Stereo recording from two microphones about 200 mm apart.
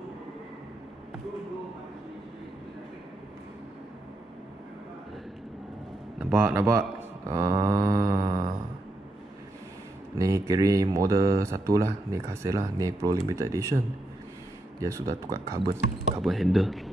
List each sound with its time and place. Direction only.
6.1 s a man's voice: 10° right (ahead or behind)
7.2 s a sound: 15° right (ahead or behind)
10.1 s speech: 15° right (ahead or behind)
16.2 s speech: centre (ahead or behind)